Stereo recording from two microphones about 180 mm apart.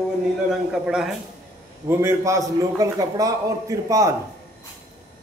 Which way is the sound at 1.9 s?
15° right (ahead or behind).